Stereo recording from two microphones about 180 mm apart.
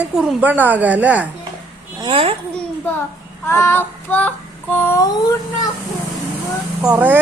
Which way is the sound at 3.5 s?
15° left (ahead or behind).